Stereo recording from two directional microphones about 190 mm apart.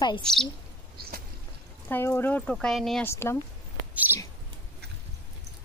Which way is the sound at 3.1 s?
15° left (ahead or behind).